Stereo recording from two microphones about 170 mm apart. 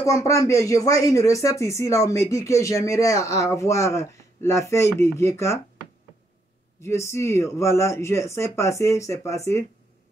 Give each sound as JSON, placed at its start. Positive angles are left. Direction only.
{"t": 0.0, "sound": "speech", "side_deg": 20}
{"t": 6.8, "sound": "speech", "side_deg": 15}